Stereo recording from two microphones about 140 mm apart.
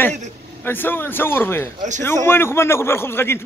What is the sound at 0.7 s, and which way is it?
A man's voice, 15° left (ahead or behind).